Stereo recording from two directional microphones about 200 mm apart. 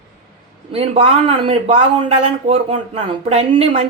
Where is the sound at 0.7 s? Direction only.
30° right (ahead or behind).